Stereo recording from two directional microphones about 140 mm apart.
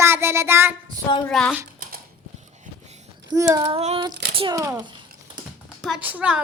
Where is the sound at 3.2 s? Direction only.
25° right (ahead or behind).